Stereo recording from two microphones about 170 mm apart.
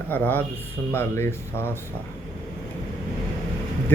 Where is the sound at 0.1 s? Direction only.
10° left (ahead or behind).